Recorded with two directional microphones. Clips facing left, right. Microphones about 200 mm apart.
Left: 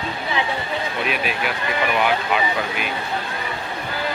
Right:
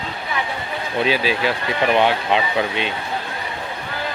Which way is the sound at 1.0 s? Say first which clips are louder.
Right 8 dB; 30° right (ahead or behind).